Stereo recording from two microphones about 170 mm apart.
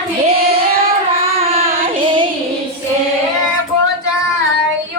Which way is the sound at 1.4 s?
30° right (ahead or behind).